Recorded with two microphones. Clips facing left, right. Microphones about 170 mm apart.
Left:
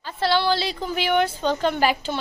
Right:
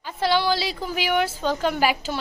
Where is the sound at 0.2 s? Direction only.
10° right (ahead or behind).